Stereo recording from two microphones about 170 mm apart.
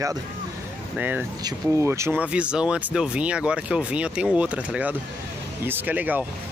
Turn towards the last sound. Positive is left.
turn(degrees=-10)  # may be behind; listen again after turning